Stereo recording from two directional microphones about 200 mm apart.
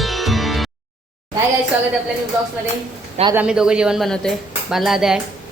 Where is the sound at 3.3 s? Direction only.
5° right (ahead or behind).